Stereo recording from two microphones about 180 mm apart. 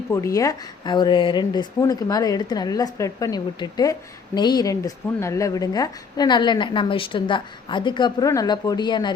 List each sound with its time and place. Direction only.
0.1 s a woman's voice: 15° left (ahead or behind)